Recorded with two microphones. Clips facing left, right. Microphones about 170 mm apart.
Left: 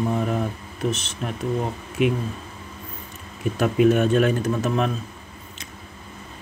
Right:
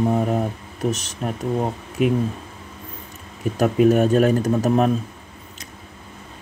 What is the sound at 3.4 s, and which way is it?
Speech, 40° right (ahead or behind).